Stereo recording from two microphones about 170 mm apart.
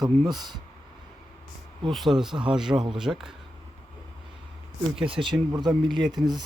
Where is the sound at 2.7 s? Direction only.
25° right (ahead or behind).